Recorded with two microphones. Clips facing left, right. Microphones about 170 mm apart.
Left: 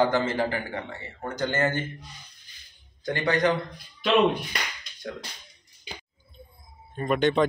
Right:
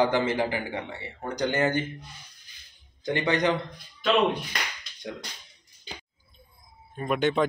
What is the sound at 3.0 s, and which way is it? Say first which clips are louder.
Speech: left 1 dB; 20° right (ahead or behind).